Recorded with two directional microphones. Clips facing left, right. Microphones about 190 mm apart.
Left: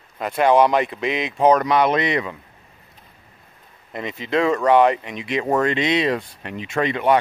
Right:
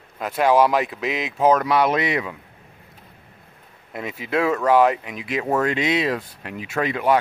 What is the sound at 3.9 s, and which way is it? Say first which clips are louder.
Speech: left 2 dB; 5° right (ahead or behind).